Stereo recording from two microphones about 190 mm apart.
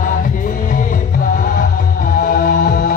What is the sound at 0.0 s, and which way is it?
Music, 45° left (ahead or behind).